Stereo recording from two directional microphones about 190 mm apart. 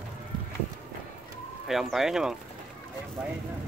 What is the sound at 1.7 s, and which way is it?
Speech, centre (ahead or behind).